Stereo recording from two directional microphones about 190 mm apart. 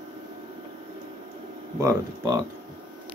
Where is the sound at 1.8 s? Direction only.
15° right (ahead or behind).